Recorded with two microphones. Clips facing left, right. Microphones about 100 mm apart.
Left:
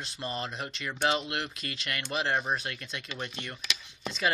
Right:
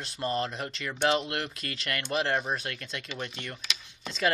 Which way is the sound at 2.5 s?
25° left (ahead or behind).